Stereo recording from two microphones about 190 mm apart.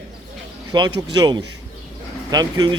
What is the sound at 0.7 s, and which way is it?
A man's voice, 25° right (ahead or behind).